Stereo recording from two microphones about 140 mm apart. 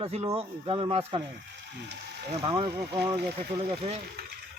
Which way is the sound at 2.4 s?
35° right (ahead or behind).